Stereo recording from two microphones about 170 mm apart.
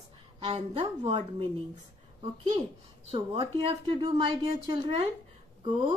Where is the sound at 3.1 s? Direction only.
30° right (ahead or behind).